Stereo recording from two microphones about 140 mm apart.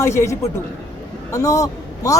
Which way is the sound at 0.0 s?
20° left (ahead or behind).